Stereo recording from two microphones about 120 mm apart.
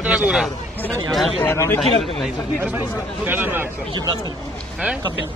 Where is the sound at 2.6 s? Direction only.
15° right (ahead or behind).